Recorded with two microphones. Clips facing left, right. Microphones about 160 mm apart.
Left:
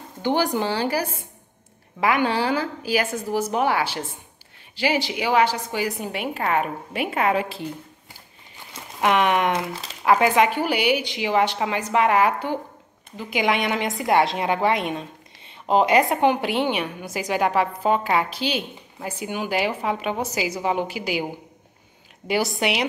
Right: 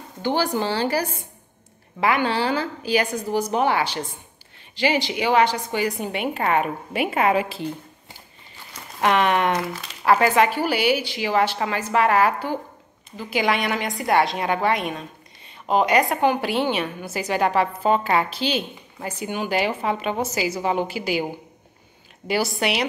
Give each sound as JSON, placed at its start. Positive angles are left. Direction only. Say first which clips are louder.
{"t": 0.2, "sound": "a woman's voice", "louder": "left 1 dB", "side_deg": 15}
{"t": 9.0, "sound": "a woman's voice", "louder": "even", "side_deg": 10}
{"t": 22.3, "sound": "a woman's voice", "louder": "even", "side_deg": 15}